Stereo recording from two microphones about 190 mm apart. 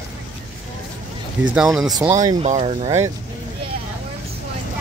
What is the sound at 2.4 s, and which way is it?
Speech, 30° right (ahead or behind).